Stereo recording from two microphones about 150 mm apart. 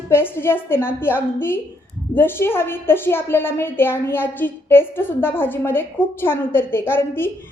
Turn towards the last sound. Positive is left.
turn(degrees=15)  # may be behind; listen again after turning